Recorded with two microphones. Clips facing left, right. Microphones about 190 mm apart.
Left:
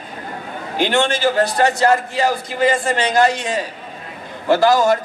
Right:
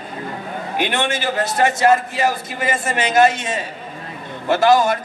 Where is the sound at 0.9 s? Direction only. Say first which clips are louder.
Left 8 dB; 20° right (ahead or behind).